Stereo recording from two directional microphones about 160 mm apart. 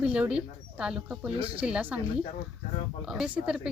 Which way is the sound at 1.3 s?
35° right (ahead or behind).